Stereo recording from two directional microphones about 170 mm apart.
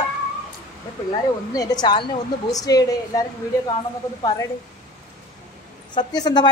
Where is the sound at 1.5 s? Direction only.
25° left (ahead or behind).